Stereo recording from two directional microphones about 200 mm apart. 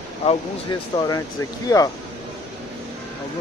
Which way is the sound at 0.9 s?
20° left (ahead or behind).